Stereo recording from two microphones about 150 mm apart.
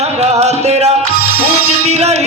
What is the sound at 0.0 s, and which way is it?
Music, 45° right (ahead or behind).